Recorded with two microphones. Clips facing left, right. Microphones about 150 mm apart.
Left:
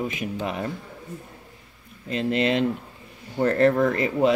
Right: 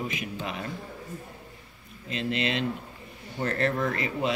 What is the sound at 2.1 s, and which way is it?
Speech, 45° left (ahead or behind).